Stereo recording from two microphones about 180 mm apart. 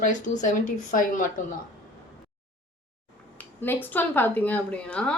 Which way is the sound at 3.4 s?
10° left (ahead or behind).